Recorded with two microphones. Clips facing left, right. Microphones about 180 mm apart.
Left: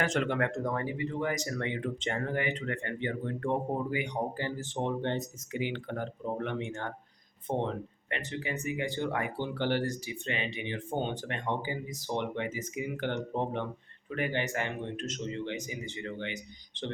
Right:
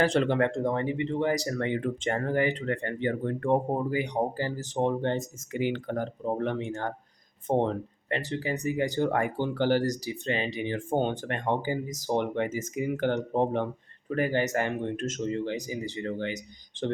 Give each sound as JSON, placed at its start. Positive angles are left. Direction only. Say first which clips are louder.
{"t": 0.0, "sound": "speech", "louder": "right 6 dB", "side_deg": -30}
{"t": 3.9, "sound": "speech", "louder": "right 5 dB", "side_deg": -35}